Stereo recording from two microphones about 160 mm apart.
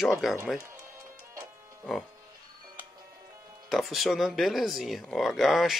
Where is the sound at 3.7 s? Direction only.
Centre (ahead or behind).